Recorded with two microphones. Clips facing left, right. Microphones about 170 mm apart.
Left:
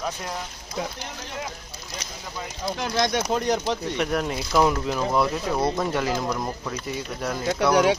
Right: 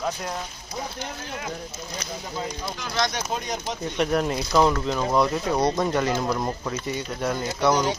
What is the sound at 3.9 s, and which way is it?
Speech, centre (ahead or behind).